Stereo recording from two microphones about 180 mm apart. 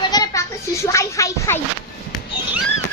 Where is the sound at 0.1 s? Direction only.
20° left (ahead or behind).